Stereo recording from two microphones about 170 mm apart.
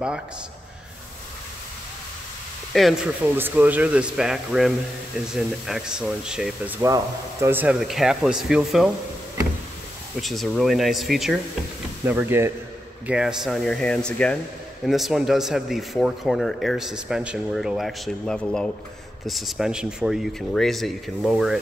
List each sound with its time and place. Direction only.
2.7 s speech: centre (ahead or behind)
6.8 s speech: 15° right (ahead or behind)
7.8 s speech: centre (ahead or behind)
10.2 s speech: centre (ahead or behind)
12.0 s speech: 10° right (ahead or behind)